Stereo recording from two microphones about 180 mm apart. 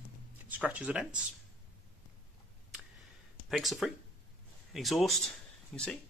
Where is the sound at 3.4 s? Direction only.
Centre (ahead or behind).